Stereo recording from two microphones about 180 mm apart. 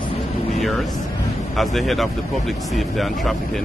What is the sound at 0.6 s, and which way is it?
Vehicle, centre (ahead or behind).